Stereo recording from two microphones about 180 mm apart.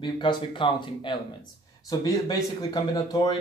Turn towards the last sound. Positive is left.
turn(degrees=25)  # may be behind; listen again after turning